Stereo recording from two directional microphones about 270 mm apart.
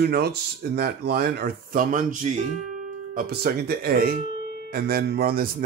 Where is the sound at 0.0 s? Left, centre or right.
Right.